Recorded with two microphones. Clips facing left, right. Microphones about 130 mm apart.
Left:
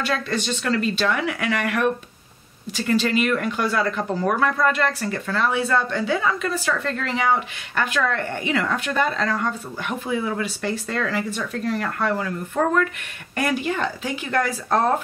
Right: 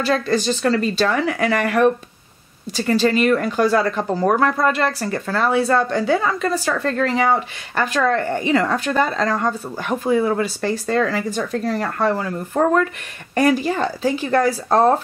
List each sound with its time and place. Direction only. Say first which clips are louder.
0.0 s speech: right 6 dB; 35° right (ahead or behind)